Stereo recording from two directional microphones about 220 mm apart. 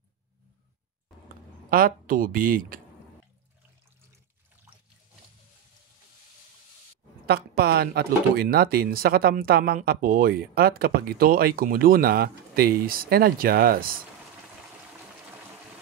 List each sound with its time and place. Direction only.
1.7 s speech: 40° right (ahead or behind)
7.2 s speech: 45° right (ahead or behind)